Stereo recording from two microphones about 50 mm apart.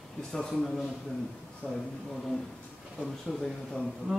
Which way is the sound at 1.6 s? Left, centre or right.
Left.